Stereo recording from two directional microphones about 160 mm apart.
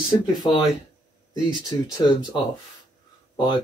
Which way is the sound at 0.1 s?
25° left (ahead or behind).